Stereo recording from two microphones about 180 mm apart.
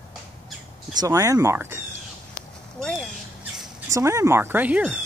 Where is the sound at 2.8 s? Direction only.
5° left (ahead or behind).